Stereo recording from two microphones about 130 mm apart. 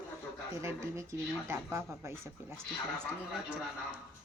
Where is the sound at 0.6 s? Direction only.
20° right (ahead or behind).